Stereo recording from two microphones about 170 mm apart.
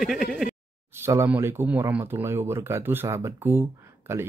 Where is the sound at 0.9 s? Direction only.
15° right (ahead or behind).